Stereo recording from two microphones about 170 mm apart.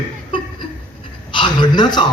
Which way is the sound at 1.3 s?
25° left (ahead or behind).